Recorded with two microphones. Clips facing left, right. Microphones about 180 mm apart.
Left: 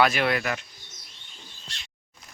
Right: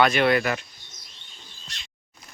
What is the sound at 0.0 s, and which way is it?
Speech, 5° left (ahead or behind).